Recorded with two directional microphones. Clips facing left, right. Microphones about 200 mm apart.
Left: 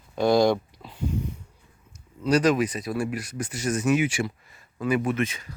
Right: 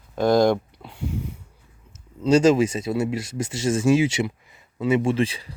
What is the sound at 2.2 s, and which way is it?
Speech, 25° right (ahead or behind).